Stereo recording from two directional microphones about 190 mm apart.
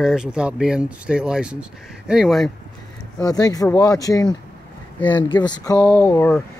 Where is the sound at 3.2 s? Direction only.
20° left (ahead or behind).